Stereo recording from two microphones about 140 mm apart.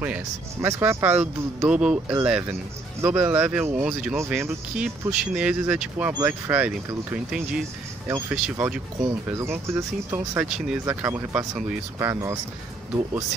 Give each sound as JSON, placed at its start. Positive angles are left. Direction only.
{"t": 0.6, "sound": "speech", "side_deg": -20}
{"t": 9.0, "sound": "speech", "side_deg": -20}
{"t": 10.1, "sound": "speech", "side_deg": -10}
{"t": 10.9, "sound": "speech", "side_deg": -15}